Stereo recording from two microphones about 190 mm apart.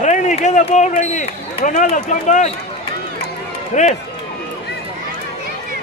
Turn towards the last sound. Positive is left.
turn(degrees=40)  # may be behind; listen again after turning